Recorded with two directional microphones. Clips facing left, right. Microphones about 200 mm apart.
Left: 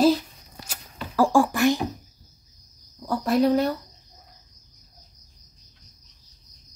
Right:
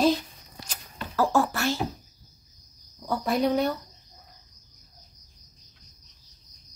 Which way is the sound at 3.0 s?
Centre (ahead or behind).